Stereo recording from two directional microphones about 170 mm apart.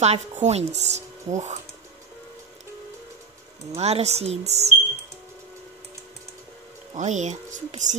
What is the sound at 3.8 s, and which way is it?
Speech, 40° right (ahead or behind).